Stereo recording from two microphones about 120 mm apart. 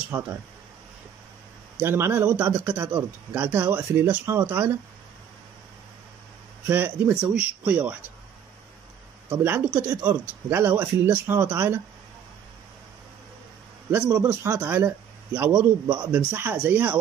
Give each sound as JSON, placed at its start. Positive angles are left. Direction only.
{"t": 0.1, "sound": "speech", "side_deg": -5}
{"t": 1.8, "sound": "speech", "side_deg": -20}
{"t": 6.7, "sound": "speech", "side_deg": -20}
{"t": 9.3, "sound": "speech", "side_deg": -20}
{"t": 13.8, "sound": "speech", "side_deg": -15}